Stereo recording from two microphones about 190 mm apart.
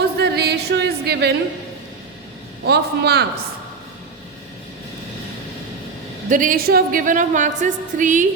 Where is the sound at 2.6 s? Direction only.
60° right (ahead or behind).